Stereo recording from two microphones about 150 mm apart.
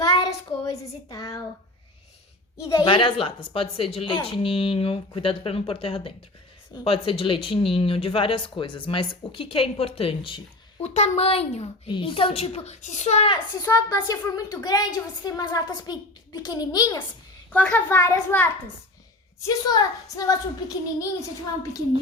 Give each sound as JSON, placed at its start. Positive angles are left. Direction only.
{"t": 0.2, "sound": "a child's voice", "side_deg": 20}
{"t": 2.8, "sound": "speech", "side_deg": 35}
{"t": 10.8, "sound": "speech", "side_deg": 45}
{"t": 13.3, "sound": "a woman's voice", "side_deg": 25}
{"t": 17.5, "sound": "a child's voice", "side_deg": 10}